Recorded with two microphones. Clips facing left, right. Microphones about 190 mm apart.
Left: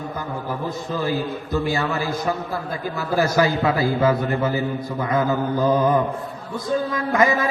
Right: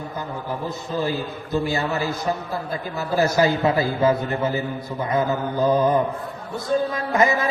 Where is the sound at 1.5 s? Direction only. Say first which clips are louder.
Even; 20° right (ahead or behind).